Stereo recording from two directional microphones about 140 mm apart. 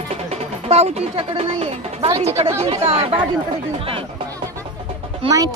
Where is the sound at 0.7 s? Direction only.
50° right (ahead or behind).